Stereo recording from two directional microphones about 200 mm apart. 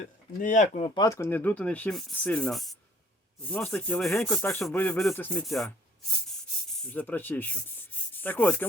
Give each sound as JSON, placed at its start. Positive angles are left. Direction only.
{"t": 0.0, "sound": "speech", "side_deg": 40}
{"t": 1.0, "sound": "speech", "side_deg": 15}
{"t": 4.6, "sound": "a sound", "side_deg": 10}
{"t": 6.2, "sound": "sanding", "side_deg": 0}